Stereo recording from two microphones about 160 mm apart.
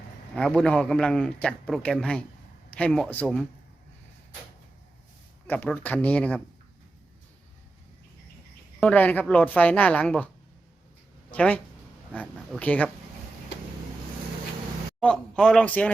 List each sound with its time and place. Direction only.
0.3 s a man's voice: 5° left (ahead or behind)
5.5 s a woman's voice: 10° left (ahead or behind)
8.8 s a woman's voice: 10° left (ahead or behind)
11.3 s a woman's voice: 10° left (ahead or behind)
15.0 s a man's voice: 5° left (ahead or behind)